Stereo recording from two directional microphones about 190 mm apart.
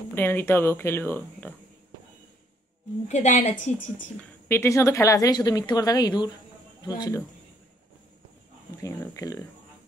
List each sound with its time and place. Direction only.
0.1 s speech: 10° left (ahead or behind)
3.1 s a woman's voice: 35° left (ahead or behind)
4.2 s a woman's voice: 15° left (ahead or behind)
8.8 s speech: 15° left (ahead or behind)